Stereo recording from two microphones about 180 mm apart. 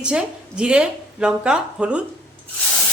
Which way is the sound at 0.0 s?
5° right (ahead or behind).